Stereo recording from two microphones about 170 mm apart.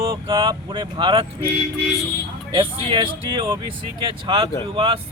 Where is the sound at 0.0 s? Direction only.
25° right (ahead or behind).